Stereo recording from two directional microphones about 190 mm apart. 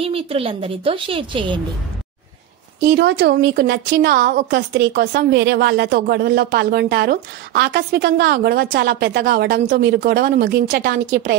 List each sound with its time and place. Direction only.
0.0 s a woman's voice: 30° right (ahead or behind)
2.9 s a woman's voice: 60° right (ahead or behind)